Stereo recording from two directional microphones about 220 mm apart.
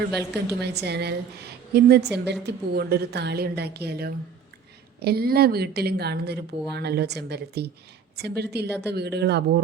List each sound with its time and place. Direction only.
0.6 s a woman's voice: 50° right (ahead or behind)